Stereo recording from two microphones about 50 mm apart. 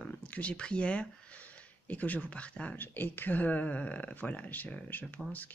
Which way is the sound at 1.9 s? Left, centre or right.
Left.